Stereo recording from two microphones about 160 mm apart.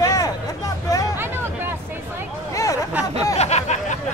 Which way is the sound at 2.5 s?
20° left (ahead or behind).